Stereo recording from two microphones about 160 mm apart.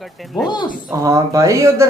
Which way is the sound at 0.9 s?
20° right (ahead or behind).